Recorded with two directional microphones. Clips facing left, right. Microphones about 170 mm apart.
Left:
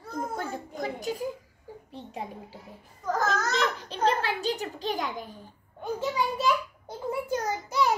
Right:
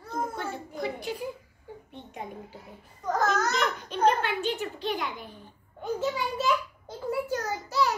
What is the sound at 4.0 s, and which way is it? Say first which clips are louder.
A child's voice: right 2 dB; 35° left (ahead or behind).